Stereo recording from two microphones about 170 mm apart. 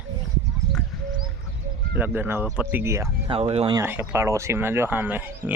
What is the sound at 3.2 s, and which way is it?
Speech, 35° right (ahead or behind).